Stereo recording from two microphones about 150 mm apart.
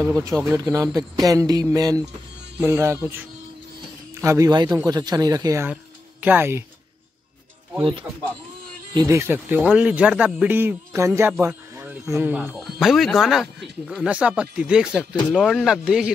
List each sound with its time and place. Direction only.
0.0 s speech: 20° right (ahead or behind)
4.1 s speech: 20° right (ahead or behind)
8.9 s speech: 20° right (ahead or behind)
11.4 s a sound: 15° right (ahead or behind)
12.4 s speech: 5° right (ahead or behind)